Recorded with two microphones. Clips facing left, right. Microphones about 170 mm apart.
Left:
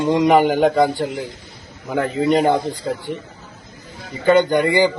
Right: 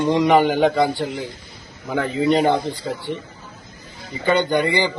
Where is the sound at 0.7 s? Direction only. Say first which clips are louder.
Left 2 dB; 45° left (ahead or behind).